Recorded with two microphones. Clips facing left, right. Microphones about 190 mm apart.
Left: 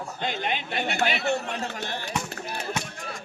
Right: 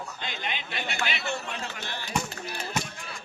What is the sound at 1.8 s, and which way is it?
Speech, 55° left (ahead or behind).